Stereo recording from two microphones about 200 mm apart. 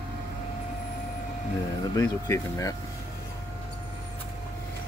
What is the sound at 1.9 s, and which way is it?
Speech, 15° left (ahead or behind).